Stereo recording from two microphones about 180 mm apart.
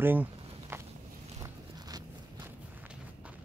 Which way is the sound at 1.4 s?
20° right (ahead or behind).